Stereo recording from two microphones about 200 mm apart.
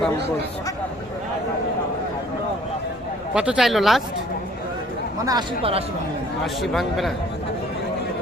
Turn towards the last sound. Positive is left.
turn(degrees=0)  # may be behind; listen again after turning